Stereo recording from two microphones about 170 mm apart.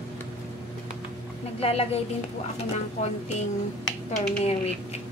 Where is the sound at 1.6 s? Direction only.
35° left (ahead or behind).